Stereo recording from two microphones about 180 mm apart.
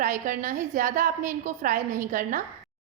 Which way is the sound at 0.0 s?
45° right (ahead or behind).